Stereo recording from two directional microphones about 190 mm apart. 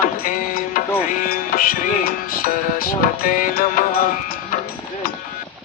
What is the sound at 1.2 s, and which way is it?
Music, 50° left (ahead or behind).